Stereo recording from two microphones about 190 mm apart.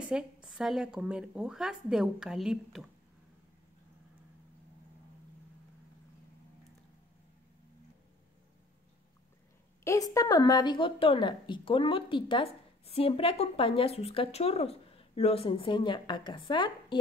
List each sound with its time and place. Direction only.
0.1 s speech: 5° right (ahead or behind)
9.8 s a woman's voice: 20° left (ahead or behind)